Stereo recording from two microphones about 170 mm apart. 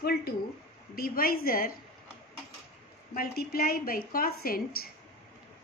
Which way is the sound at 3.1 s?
60° left (ahead or behind).